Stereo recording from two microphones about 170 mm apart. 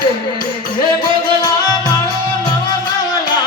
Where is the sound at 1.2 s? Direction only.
25° left (ahead or behind).